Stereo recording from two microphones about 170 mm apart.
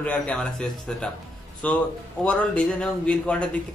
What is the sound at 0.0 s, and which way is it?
A man's voice, 5° left (ahead or behind).